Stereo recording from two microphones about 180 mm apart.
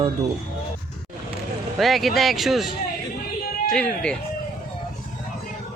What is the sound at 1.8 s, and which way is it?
Speech, centre (ahead or behind).